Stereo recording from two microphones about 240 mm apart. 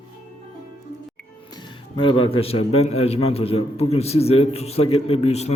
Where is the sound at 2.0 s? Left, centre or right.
Left.